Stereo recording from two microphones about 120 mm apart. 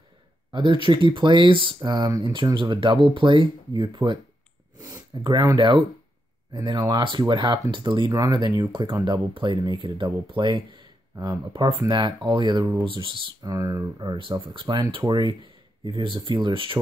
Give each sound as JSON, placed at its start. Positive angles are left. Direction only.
{"t": 0.5, "sound": "speech", "side_deg": -40}
{"t": 4.7, "sound": "a sound", "side_deg": -25}
{"t": 5.2, "sound": "speech", "side_deg": -35}
{"t": 13.4, "sound": "speech", "side_deg": -30}